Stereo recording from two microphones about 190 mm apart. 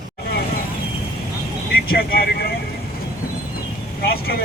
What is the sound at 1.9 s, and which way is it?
Speech, 50° left (ahead or behind).